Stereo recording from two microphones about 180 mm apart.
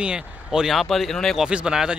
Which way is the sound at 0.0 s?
5° right (ahead or behind).